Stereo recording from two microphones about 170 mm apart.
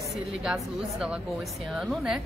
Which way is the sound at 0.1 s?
5° right (ahead or behind).